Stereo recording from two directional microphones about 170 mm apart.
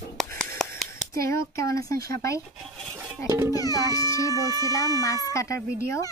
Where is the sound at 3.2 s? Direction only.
15° right (ahead or behind).